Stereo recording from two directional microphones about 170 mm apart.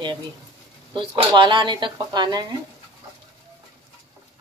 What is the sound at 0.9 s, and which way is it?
Speech, 30° right (ahead or behind).